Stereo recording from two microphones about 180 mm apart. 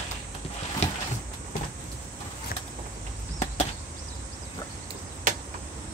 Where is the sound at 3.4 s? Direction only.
40° left (ahead or behind).